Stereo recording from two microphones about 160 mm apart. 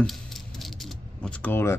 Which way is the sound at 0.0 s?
Centre (ahead or behind).